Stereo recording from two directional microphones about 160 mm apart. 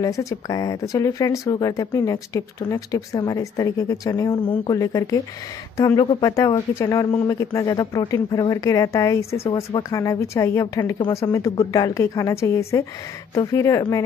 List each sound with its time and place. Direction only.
0.0 s speech: 20° left (ahead or behind)